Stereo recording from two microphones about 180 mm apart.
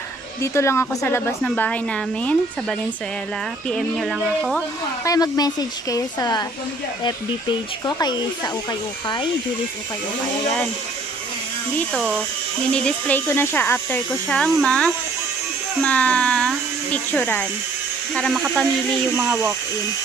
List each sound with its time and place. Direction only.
0.4 s speech: 15° left (ahead or behind)
3.7 s speech: 5° left (ahead or behind)
5.0 s a woman's voice: 20° left (ahead or behind)
11.9 s speech: centre (ahead or behind)
19.1 s speech: 15° right (ahead or behind)